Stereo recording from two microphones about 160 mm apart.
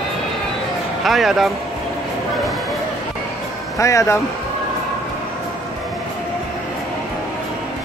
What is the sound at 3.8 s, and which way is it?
Speech, 20° left (ahead or behind).